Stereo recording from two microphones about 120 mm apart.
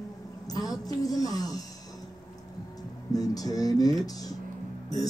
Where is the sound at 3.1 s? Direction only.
30° left (ahead or behind).